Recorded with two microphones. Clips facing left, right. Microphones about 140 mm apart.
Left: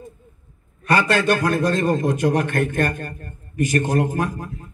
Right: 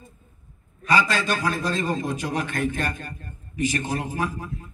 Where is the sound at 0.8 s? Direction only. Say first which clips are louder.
Left 4 dB; 60° left (ahead or behind).